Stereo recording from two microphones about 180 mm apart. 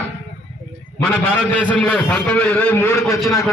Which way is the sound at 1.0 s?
5° left (ahead or behind).